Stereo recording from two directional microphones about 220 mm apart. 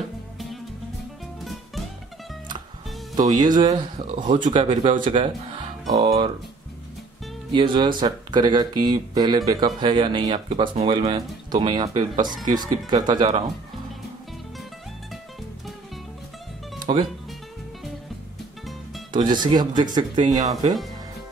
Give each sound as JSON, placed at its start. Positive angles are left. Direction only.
{"t": 3.2, "sound": "speech", "side_deg": -20}
{"t": 4.1, "sound": "speech", "side_deg": -35}
{"t": 4.4, "sound": "speech", "side_deg": -20}
{"t": 7.5, "sound": "speech", "side_deg": -20}
{"t": 16.8, "sound": "speech", "side_deg": -20}
{"t": 19.1, "sound": "speech", "side_deg": -20}